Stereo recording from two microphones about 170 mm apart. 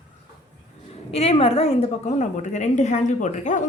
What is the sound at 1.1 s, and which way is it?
A woman's voice, 35° left (ahead or behind).